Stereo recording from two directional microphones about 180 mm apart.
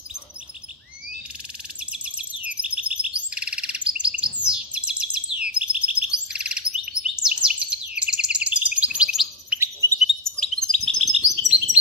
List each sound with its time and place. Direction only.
1.9 s chirp: 5° right (ahead or behind)
9.6 s bird: 15° right (ahead or behind)
9.9 s chirp: centre (ahead or behind)